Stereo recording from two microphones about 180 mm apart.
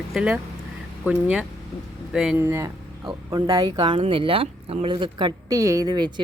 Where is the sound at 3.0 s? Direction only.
25° right (ahead or behind).